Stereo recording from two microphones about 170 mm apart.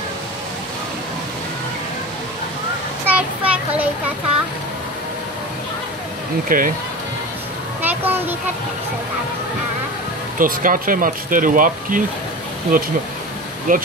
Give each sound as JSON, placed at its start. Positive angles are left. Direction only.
{"t": 3.2, "sound": "a child's voice", "side_deg": -5}
{"t": 6.5, "sound": "speech", "side_deg": -55}
{"t": 7.8, "sound": "a child's voice", "side_deg": -10}
{"t": 10.4, "sound": "speech", "side_deg": -55}